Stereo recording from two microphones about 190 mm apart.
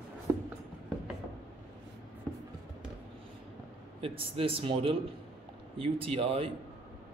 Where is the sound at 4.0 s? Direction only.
30° right (ahead or behind).